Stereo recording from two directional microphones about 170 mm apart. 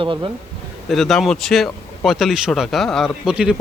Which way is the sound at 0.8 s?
Centre (ahead or behind).